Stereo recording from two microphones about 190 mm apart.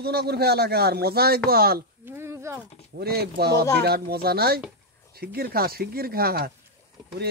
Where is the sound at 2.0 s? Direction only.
15° right (ahead or behind).